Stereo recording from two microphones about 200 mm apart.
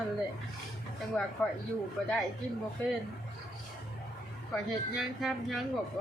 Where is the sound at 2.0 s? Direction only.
Centre (ahead or behind).